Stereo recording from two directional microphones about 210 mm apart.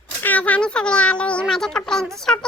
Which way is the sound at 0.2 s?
10° left (ahead or behind).